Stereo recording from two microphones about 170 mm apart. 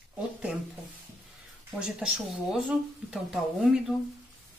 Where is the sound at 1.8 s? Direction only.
5° right (ahead or behind).